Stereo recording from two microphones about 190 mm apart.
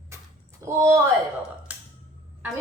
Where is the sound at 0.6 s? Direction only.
15° right (ahead or behind).